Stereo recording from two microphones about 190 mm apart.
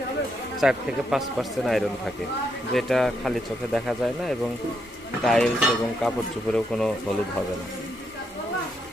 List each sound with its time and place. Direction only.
0.6 s speech: centre (ahead or behind)